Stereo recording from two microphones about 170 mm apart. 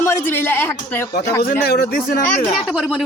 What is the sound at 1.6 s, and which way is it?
Speech, 65° left (ahead or behind).